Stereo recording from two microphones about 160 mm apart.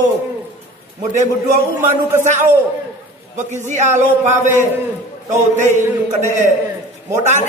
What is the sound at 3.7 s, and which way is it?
A man's voice, 50° right (ahead or behind).